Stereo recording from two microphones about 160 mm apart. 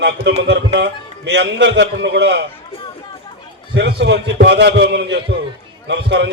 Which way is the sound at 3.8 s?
90° right.